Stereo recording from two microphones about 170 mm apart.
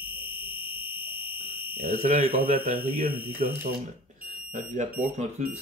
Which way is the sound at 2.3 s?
10° right (ahead or behind).